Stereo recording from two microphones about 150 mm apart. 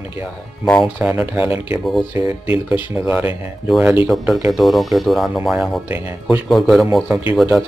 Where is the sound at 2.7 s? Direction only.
10° right (ahead or behind).